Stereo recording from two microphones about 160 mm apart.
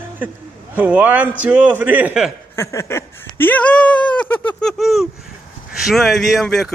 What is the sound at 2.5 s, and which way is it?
Speech, 15° left (ahead or behind).